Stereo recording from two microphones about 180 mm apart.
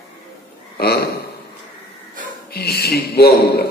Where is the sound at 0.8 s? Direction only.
60° left (ahead or behind).